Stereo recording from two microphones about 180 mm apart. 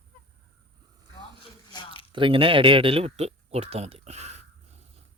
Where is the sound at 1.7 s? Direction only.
25° left (ahead or behind).